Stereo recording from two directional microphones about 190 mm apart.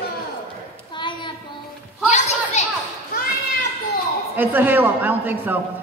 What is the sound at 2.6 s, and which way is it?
Children playing, 35° left (ahead or behind).